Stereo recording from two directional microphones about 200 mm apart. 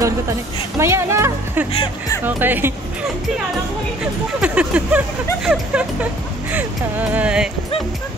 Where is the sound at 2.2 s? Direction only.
10° right (ahead or behind).